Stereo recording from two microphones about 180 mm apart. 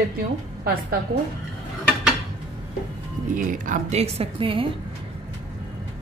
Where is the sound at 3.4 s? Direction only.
45° right (ahead or behind); by 4.7 s 30° right (ahead or behind).